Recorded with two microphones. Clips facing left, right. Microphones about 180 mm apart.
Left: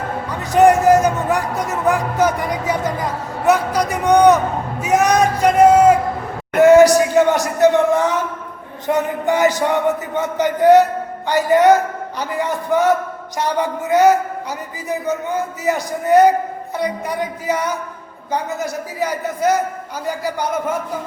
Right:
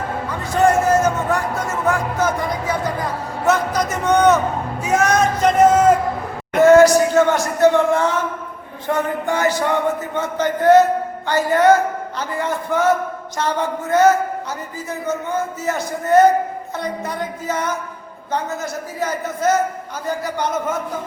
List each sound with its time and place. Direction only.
0.5 s speech: 15° left (ahead or behind)
6.6 s a sound: 15° left (ahead or behind)
8.9 s speech: 15° left (ahead or behind)
18.9 s speech: 15° left (ahead or behind)